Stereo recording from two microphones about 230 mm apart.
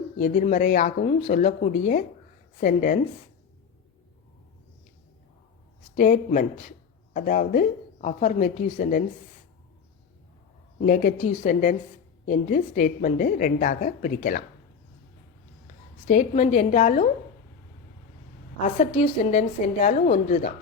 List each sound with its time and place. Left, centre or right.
0.2 s speech: left
6.0 s speech: left
10.8 s speech: left
15.6 s a woman's voice: left
18.6 s speech: left